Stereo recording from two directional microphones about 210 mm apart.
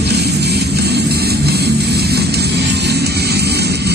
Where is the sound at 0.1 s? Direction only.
50° right (ahead or behind).